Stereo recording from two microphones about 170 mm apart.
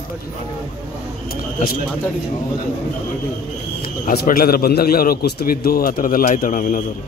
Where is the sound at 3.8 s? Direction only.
65° left (ahead or behind).